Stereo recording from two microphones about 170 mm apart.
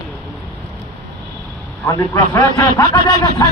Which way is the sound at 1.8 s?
20° left (ahead or behind).